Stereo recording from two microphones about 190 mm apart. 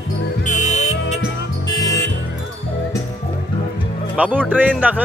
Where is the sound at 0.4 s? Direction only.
40° left (ahead or behind).